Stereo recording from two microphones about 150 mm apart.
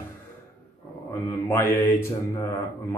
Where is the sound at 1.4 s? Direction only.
15° left (ahead or behind).